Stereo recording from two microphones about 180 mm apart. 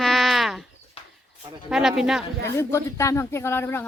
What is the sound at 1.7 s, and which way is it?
Speech, centre (ahead or behind).